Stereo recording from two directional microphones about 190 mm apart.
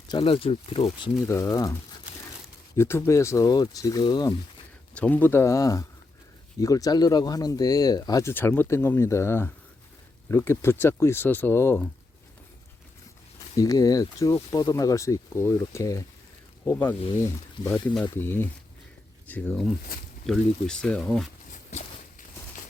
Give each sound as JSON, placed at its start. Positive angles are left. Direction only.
{"t": 0.1, "sound": "speech", "side_deg": 30}
{"t": 2.7, "sound": "speech", "side_deg": 15}
{"t": 4.9, "sound": "speech", "side_deg": 10}
{"t": 13.6, "sound": "speech", "side_deg": 20}
{"t": 17.6, "sound": "speech", "side_deg": 20}
{"t": 17.8, "sound": "speech", "side_deg": 10}
{"t": 21.5, "sound": "a sound", "side_deg": 40}